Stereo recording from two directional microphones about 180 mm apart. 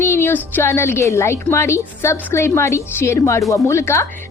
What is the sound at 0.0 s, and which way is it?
A woman's voice, 15° left (ahead or behind).